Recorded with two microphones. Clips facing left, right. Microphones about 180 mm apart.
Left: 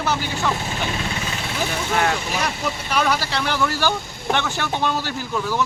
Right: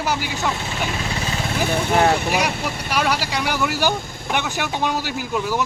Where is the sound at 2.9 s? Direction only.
10° right (ahead or behind).